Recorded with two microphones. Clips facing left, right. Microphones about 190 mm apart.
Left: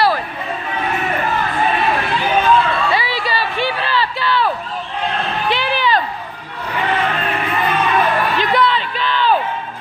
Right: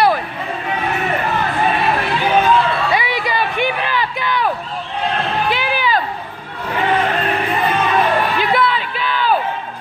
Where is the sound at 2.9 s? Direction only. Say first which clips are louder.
Right 1 dB; 20° right (ahead or behind).